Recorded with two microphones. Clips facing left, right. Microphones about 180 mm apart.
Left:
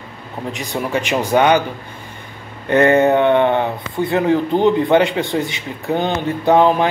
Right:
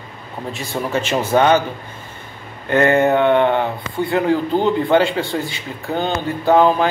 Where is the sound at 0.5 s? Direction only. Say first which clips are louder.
Left 1 dB; 15° left (ahead or behind).